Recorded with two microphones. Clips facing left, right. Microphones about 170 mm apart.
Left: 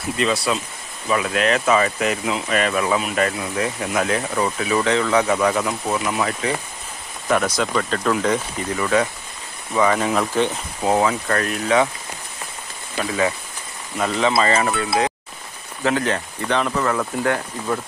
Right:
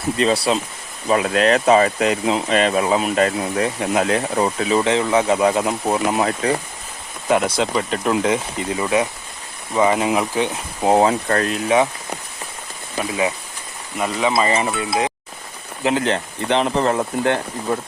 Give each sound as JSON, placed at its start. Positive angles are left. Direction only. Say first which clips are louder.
{"t": 0.2, "sound": "speech", "louder": "right 3 dB", "side_deg": -35}
{"t": 10.8, "sound": "speech", "louder": "right 3 dB", "side_deg": -30}
{"t": 11.5, "sound": "speech", "louder": "even", "side_deg": -20}
{"t": 13.0, "sound": "speech", "louder": "even", "side_deg": -15}